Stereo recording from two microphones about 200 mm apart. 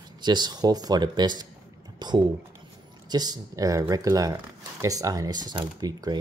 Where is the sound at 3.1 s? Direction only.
20° right (ahead or behind).